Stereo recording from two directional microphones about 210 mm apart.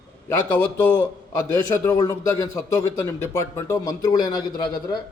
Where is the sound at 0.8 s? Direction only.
10° left (ahead or behind).